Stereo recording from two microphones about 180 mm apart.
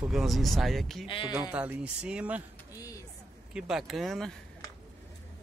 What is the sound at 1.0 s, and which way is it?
Speech, 30° left (ahead or behind).